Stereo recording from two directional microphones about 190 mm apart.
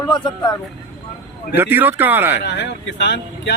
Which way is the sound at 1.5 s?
10° right (ahead or behind).